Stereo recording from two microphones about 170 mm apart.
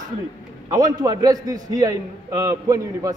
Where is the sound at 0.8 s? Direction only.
20° right (ahead or behind).